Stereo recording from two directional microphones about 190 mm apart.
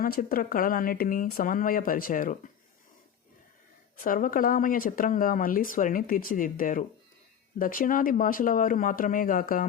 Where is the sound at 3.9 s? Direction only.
45° left (ahead or behind).